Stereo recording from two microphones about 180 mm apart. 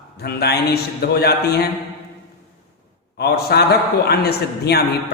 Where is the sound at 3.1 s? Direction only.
65° left (ahead or behind).